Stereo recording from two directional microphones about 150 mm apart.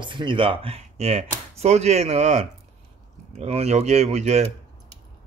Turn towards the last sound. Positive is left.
turn(degrees=-50)  # may be behind; listen again after turning